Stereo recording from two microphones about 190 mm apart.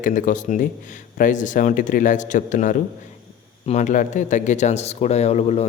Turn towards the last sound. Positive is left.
turn(degrees=35)  # may be behind; listen again after turning